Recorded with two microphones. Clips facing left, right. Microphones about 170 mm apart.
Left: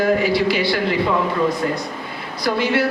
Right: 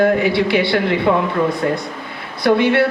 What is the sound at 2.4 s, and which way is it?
Speech, 60° right (ahead or behind).